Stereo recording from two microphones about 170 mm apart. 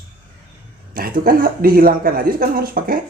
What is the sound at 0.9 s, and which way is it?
A man's voice, 55° right (ahead or behind).